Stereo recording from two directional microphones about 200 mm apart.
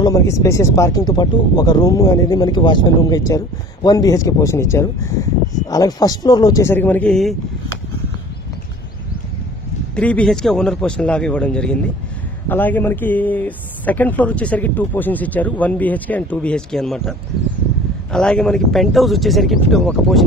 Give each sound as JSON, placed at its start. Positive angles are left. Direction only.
{"t": 0.0, "sound": "speech", "side_deg": 15}
{"t": 9.9, "sound": "speech", "side_deg": 5}
{"t": 18.1, "sound": "speech", "side_deg": 5}